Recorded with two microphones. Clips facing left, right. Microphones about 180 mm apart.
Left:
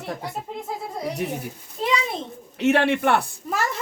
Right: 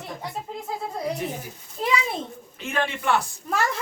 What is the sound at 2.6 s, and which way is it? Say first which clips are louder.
Speech: left 8 dB; 70° left (ahead or behind).